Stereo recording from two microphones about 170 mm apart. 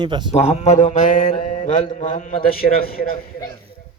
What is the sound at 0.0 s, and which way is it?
Speech, 25° right (ahead or behind).